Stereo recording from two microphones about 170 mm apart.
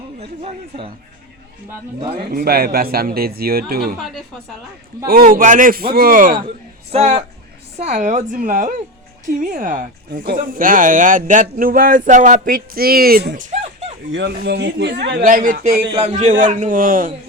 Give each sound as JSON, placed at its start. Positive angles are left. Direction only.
{"t": 0.2, "sound": "speech", "side_deg": -35}
{"t": 2.1, "sound": "speech", "side_deg": -60}
{"t": 5.0, "sound": "speech", "side_deg": -55}
{"t": 6.9, "sound": "speech", "side_deg": -45}
{"t": 14.1, "sound": "speech", "side_deg": -85}
{"t": 15.9, "sound": "speech", "side_deg": -35}